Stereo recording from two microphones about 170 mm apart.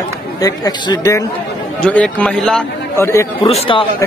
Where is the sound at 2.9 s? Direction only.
15° left (ahead or behind).